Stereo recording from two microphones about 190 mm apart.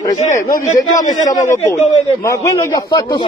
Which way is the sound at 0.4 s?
15° left (ahead or behind).